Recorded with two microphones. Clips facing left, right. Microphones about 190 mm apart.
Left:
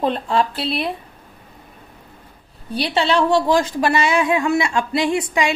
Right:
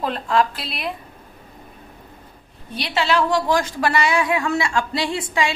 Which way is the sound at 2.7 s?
30° left (ahead or behind).